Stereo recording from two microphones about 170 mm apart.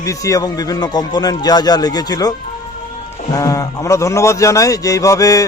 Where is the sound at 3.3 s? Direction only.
20° left (ahead or behind).